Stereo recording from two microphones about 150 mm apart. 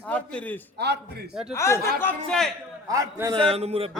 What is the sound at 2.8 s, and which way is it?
Speech, 20° right (ahead or behind).